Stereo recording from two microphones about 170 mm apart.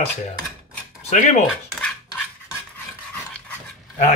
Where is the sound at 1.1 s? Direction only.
45° left (ahead or behind).